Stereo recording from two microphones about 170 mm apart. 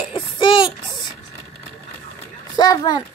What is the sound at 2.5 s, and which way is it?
Speech, 25° left (ahead or behind).